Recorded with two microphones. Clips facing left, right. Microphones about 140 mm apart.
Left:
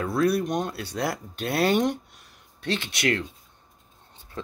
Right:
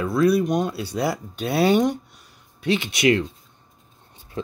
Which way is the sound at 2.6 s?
10° right (ahead or behind).